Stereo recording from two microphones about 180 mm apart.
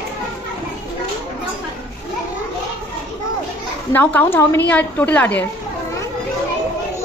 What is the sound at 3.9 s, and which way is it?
A woman's voice, 10° left (ahead or behind).